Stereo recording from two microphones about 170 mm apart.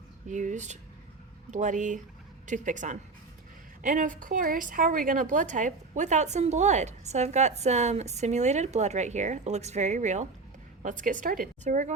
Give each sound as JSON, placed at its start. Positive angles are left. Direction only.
{"t": 0.3, "sound": "a woman's voice", "side_deg": -45}